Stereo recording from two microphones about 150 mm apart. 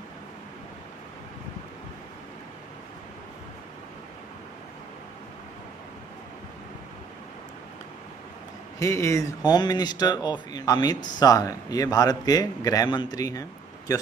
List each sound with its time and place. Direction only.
8.7 s a man's voice: 20° left (ahead or behind)